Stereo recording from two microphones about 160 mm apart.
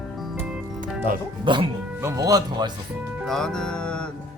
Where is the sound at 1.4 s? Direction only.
30° right (ahead or behind).